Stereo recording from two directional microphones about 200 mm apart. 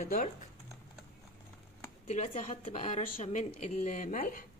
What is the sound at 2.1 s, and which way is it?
Speech, 35° left (ahead or behind).